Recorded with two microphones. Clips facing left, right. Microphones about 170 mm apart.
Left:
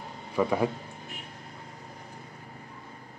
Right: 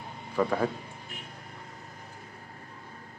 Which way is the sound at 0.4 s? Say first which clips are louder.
Left 1 dB; 10° left (ahead or behind).